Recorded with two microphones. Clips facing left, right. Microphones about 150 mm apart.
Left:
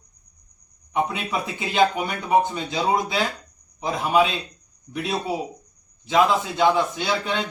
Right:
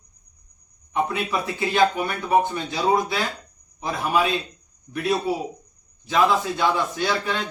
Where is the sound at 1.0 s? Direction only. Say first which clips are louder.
Right 2 dB; 20° left (ahead or behind).